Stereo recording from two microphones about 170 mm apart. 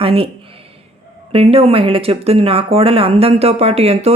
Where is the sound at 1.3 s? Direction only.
35° right (ahead or behind).